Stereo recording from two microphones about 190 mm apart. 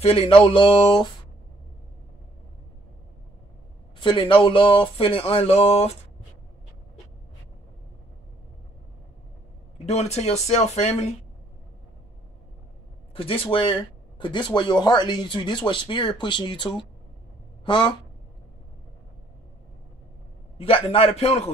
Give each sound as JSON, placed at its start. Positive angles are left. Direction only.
{"t": 0.0, "sound": "speech", "side_deg": 30}
{"t": 4.0, "sound": "speech", "side_deg": 25}
{"t": 9.8, "sound": "speech", "side_deg": 35}
{"t": 13.1, "sound": "speech", "side_deg": 30}
{"t": 20.5, "sound": "speech", "side_deg": 30}